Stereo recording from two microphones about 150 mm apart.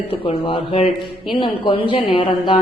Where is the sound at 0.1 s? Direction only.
40° left (ahead or behind).